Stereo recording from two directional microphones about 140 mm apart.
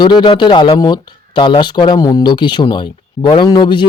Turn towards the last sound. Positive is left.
turn(degrees=35)  # may be behind; listen again after turning